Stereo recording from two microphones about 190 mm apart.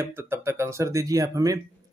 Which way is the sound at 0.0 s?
10° right (ahead or behind).